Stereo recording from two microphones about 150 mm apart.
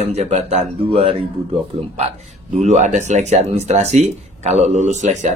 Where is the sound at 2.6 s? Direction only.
50° right (ahead or behind).